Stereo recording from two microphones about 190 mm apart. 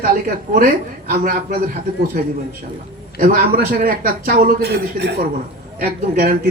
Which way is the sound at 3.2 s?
50° right (ahead or behind).